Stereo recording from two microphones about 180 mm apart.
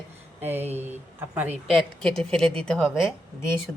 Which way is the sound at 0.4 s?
10° right (ahead or behind).